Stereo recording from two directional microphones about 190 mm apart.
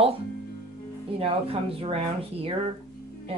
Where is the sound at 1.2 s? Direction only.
30° right (ahead or behind).